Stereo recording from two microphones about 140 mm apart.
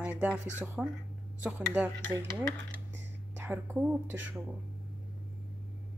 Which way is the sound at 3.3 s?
15° right (ahead or behind).